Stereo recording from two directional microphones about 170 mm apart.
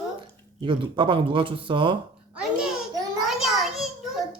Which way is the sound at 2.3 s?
5° right (ahead or behind).